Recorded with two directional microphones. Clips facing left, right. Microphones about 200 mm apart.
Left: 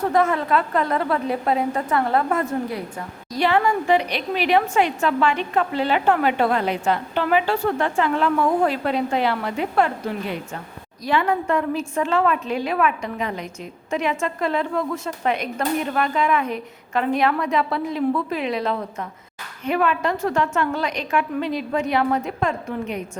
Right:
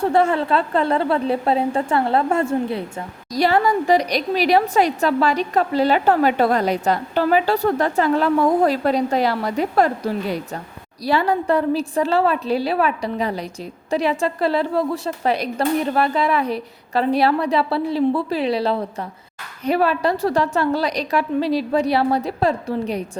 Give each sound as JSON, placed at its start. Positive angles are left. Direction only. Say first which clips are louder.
{"t": 0.0, "sound": "a woman's voice", "louder": "right 2 dB", "side_deg": -30}
{"t": 3.3, "sound": "a woman's voice", "louder": "right 2 dB", "side_deg": -40}